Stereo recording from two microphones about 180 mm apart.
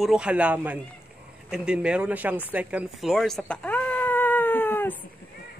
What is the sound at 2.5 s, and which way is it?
Cat, 5° right (ahead or behind).